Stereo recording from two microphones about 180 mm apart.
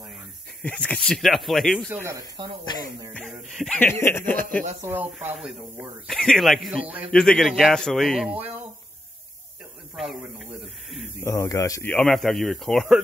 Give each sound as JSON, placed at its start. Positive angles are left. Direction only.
{"t": 0.6, "sound": "speech", "side_deg": 5}
{"t": 2.0, "sound": "speech", "side_deg": -20}
{"t": 3.2, "sound": "a sound", "side_deg": 0}
{"t": 4.3, "sound": "speech", "side_deg": 10}
{"t": 4.8, "sound": "speech", "side_deg": -10}
{"t": 9.9, "sound": "a sound", "side_deg": 0}
{"t": 11.2, "sound": "speech", "side_deg": 15}
{"t": 11.9, "sound": "speech", "side_deg": 5}